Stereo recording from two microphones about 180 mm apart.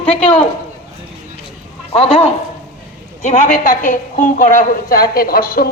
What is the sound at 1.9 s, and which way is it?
Speech, 35° left (ahead or behind).